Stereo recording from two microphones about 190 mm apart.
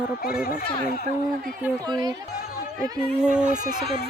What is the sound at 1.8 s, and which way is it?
Speech, 20° right (ahead or behind).